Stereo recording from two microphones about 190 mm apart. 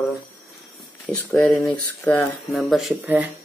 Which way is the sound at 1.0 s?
5° left (ahead or behind).